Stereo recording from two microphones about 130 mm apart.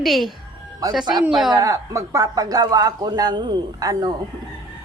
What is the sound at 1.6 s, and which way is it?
Speech, 25° right (ahead or behind).